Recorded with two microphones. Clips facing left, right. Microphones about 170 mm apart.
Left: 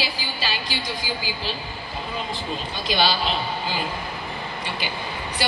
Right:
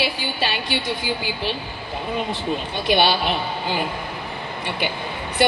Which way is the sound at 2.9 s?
60° right (ahead or behind).